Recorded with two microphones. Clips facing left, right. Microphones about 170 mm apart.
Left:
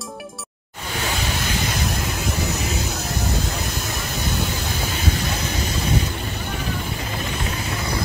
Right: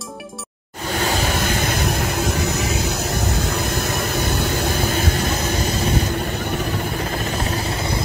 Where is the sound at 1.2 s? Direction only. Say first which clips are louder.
Right 4 dB; 50° right (ahead or behind).